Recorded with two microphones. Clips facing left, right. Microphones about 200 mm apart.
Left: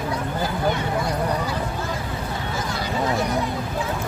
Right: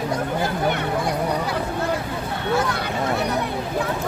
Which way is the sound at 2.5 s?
65° right (ahead or behind).